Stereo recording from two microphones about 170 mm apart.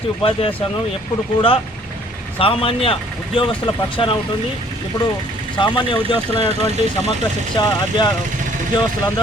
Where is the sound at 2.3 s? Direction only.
30° left (ahead or behind).